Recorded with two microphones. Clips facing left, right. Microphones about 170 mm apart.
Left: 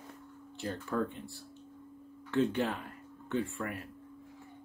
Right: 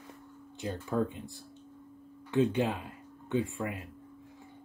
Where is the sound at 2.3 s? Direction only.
15° right (ahead or behind).